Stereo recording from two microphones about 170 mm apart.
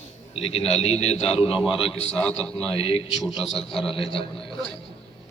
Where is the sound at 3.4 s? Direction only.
Centre (ahead or behind).